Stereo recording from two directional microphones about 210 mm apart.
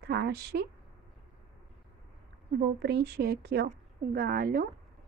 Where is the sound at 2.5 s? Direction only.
50° right (ahead or behind).